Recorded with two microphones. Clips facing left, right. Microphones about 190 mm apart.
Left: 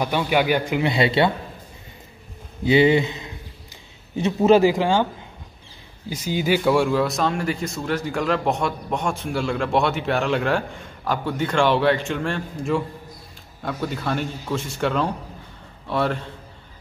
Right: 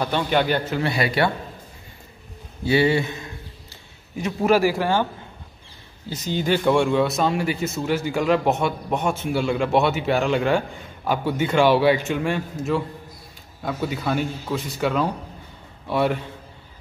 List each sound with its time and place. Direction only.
0.0 s a man's voice: 10° left (ahead or behind)
2.6 s a man's voice: 20° left (ahead or behind)
6.0 s a man's voice: 10° left (ahead or behind); by 16.3 s 10° right (ahead or behind)